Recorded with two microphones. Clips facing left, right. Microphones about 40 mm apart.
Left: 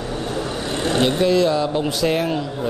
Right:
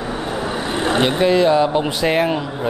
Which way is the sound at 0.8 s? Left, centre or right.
Centre.